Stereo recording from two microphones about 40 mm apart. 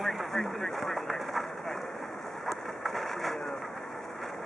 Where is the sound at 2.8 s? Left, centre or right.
Centre.